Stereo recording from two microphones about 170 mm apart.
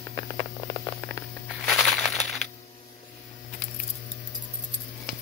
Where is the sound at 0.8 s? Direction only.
10° left (ahead or behind).